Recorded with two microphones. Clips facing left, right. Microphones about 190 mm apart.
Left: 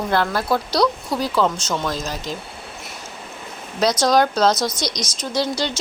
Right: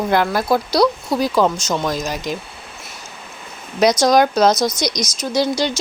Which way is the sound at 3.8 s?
15° right (ahead or behind).